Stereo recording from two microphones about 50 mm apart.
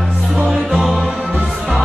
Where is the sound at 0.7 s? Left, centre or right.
Centre.